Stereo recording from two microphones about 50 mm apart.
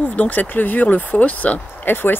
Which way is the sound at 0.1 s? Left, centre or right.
Left.